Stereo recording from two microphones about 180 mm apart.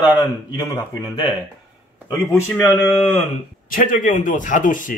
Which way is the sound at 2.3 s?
15° left (ahead or behind).